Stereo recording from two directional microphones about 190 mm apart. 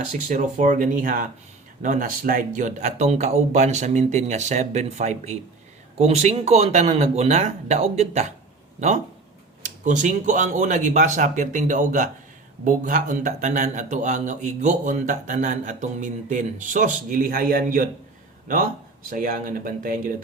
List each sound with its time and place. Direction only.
0.3 s a man's voice: 40° right (ahead or behind)
9.6 s a man's voice: 40° right (ahead or behind)
19.1 s speech: 45° right (ahead or behind)